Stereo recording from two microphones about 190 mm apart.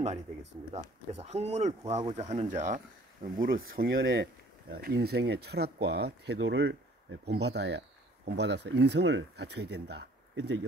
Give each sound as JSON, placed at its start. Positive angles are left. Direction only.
{"t": 1.1, "sound": "speech", "side_deg": -35}